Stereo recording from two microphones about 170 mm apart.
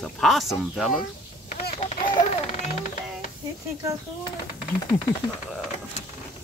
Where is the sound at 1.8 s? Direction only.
40° left (ahead or behind).